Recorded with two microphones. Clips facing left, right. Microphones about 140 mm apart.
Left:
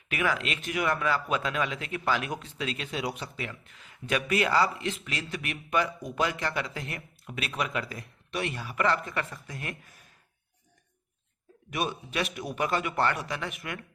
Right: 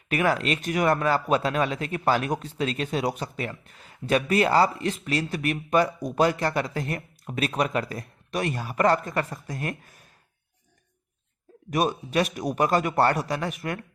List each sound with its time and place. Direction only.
0.1 s a man's voice: 40° right (ahead or behind)
11.7 s a man's voice: 40° right (ahead or behind)